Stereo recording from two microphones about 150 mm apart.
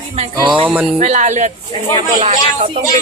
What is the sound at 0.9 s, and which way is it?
Speech, 50° right (ahead or behind).